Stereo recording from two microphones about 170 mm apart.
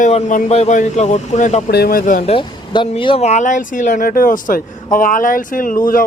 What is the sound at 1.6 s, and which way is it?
Speech, 65° left (ahead or behind).